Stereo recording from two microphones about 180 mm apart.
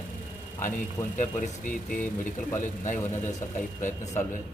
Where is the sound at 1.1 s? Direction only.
45° left (ahead or behind).